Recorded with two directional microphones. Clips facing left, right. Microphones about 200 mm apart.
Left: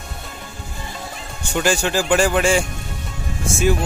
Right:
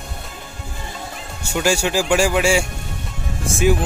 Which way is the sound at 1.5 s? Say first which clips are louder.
Even; 10° right (ahead or behind).